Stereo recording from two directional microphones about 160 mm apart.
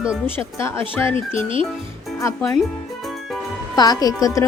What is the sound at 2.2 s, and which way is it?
Speech, 15° left (ahead or behind).